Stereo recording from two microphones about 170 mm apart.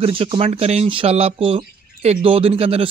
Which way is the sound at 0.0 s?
30° right (ahead or behind).